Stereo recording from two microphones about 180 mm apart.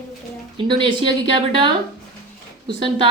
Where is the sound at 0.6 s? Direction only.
25° right (ahead or behind).